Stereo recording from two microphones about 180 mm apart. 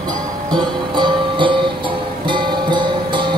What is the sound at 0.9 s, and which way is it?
Music, 25° right (ahead or behind).